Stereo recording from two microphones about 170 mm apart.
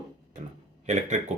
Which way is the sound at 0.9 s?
45° right (ahead or behind).